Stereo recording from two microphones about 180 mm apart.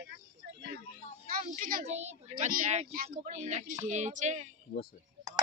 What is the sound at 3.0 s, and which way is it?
A man's voice, 40° right (ahead or behind).